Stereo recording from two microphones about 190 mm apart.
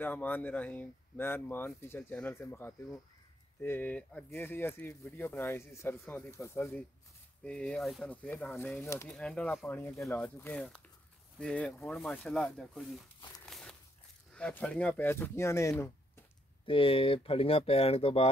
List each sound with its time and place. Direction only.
0.0 s speech: 10° left (ahead or behind)
9.1 s speech: 5° left (ahead or behind)
13.5 s a sound: centre (ahead or behind)
14.3 s speech: 5° left (ahead or behind)
16.6 s speech: 30° left (ahead or behind)